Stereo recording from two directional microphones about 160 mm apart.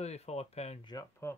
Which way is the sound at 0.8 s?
20° left (ahead or behind).